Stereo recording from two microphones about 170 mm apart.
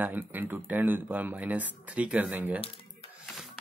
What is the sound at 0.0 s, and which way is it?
Speech, 10° right (ahead or behind).